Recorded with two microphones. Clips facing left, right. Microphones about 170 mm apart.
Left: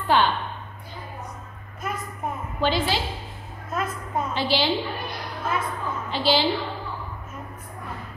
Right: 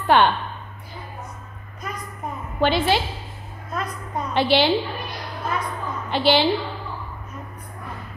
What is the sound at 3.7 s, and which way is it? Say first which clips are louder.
Speech: left 1 dB; 5° left (ahead or behind).